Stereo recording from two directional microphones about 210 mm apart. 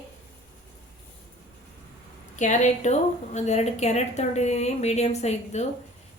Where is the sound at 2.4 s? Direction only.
35° left (ahead or behind).